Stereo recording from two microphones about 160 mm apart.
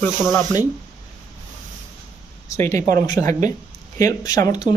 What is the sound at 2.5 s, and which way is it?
Speech, 20° left (ahead or behind).